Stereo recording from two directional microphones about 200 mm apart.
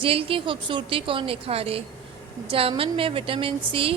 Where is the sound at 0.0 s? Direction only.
25° right (ahead or behind).